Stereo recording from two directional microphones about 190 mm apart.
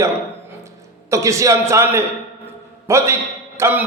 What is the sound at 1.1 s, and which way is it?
A man's voice, 15° right (ahead or behind).